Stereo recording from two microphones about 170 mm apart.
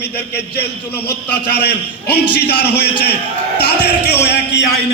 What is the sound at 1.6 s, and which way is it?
A man's voice, 75° left (ahead or behind).